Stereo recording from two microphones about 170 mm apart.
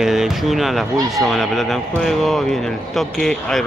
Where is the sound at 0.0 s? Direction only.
5° right (ahead or behind).